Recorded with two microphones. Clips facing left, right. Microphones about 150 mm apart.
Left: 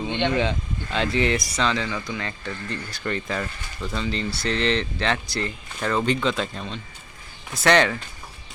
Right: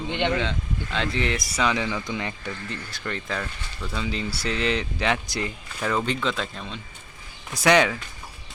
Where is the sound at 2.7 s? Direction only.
Centre (ahead or behind).